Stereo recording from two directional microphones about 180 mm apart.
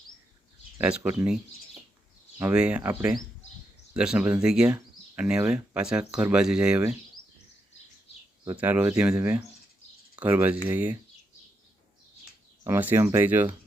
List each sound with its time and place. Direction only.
0.8 s speech: 10° right (ahead or behind)
2.4 s speech: 5° right (ahead or behind)
8.5 s speech: 10° right (ahead or behind)
12.6 s speech: 10° right (ahead or behind)